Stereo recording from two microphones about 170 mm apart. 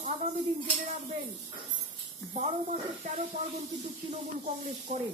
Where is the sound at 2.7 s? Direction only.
40° right (ahead or behind).